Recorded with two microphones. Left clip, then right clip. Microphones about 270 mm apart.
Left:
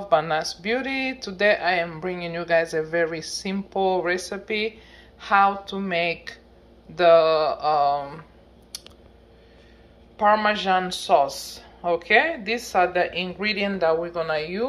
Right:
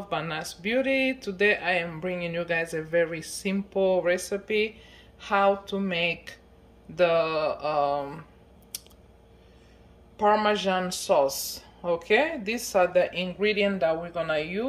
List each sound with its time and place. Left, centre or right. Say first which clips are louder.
0.1 s speech: left 10 dB; centre
7.0 s speech: left 7 dB; centre
10.1 s speech: left 3 dB; centre